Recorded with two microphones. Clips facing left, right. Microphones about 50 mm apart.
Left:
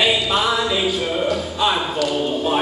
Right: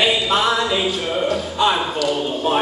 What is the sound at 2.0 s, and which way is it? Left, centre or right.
Speech, centre.